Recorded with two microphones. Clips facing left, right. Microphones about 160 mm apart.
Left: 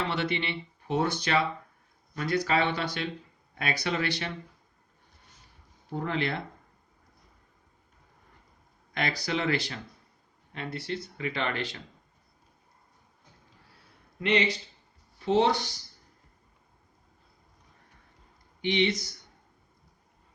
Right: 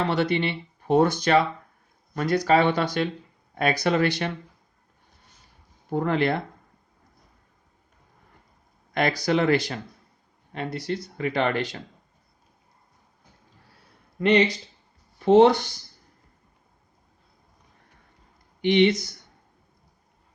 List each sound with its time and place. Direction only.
0.1 s speech: 40° right (ahead or behind)
5.9 s speech: 55° right (ahead or behind)
9.0 s speech: 45° right (ahead or behind)
15.2 s speech: 50° right (ahead or behind)
18.6 s speech: 50° right (ahead or behind)